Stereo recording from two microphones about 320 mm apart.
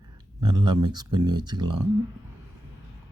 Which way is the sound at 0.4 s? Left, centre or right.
Right.